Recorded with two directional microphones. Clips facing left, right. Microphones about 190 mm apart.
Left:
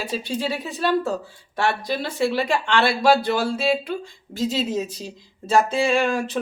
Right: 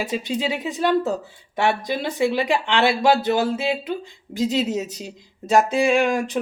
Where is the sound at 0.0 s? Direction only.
20° right (ahead or behind).